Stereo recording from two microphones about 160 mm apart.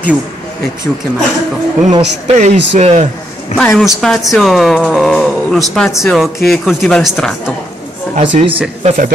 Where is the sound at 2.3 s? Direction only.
45° right (ahead or behind).